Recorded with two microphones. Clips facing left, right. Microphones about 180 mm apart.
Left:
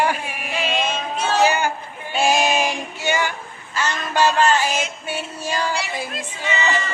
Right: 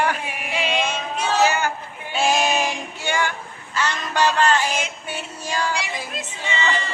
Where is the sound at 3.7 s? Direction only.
10° left (ahead or behind).